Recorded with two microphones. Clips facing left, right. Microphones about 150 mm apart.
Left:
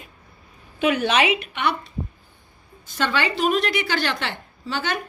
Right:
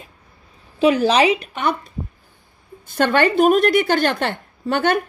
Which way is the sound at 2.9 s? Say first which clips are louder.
Right 7 dB; 55° right (ahead or behind).